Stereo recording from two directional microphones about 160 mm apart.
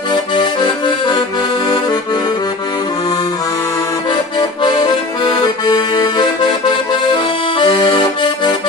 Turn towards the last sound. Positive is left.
turn(degrees=30)  # may be behind; listen again after turning